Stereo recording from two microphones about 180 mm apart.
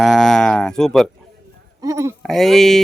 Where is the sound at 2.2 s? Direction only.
Centre (ahead or behind).